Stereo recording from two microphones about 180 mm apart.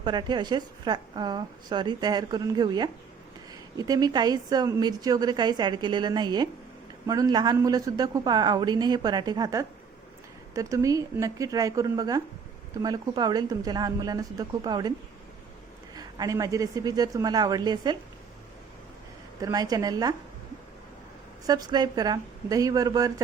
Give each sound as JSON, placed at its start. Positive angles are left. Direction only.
{"t": 0.0, "sound": "a woman's voice", "side_deg": -25}
{"t": 16.0, "sound": "a woman's voice", "side_deg": -20}
{"t": 19.4, "sound": "a woman's voice", "side_deg": -20}
{"t": 21.4, "sound": "a woman's voice", "side_deg": -25}